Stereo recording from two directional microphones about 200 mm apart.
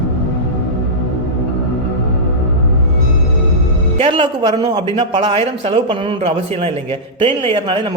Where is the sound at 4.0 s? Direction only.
25° right (ahead or behind).